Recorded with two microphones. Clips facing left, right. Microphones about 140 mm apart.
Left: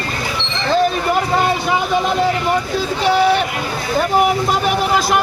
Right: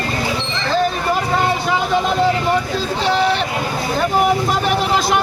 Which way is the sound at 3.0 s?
10° left (ahead or behind).